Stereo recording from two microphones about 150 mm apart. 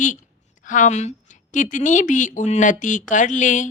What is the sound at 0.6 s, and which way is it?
A woman's voice, 60° left (ahead or behind).